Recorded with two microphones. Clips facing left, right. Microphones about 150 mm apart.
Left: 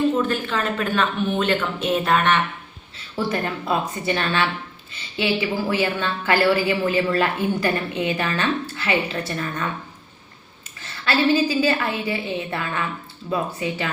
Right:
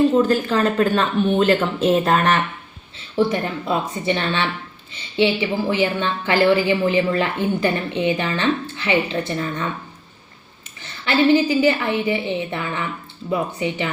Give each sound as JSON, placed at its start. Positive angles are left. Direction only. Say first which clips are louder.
{"t": 0.2, "sound": "speech", "louder": "right 6 dB", "side_deg": -35}
{"t": 3.2, "sound": "a woman's voice", "louder": "right 4 dB", "side_deg": -25}
{"t": 11.0, "sound": "a woman's voice", "louder": "right 3 dB", "side_deg": -20}